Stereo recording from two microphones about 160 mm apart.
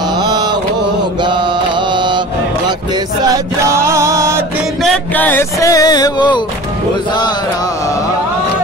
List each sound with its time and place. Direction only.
3.3 s music: 20° right (ahead or behind)
4.8 s music: 10° left (ahead or behind); by 6.4 s 25° left (ahead or behind)